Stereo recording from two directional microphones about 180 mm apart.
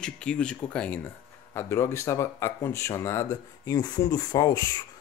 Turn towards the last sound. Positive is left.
turn(degrees=20)  # may be behind; listen again after turning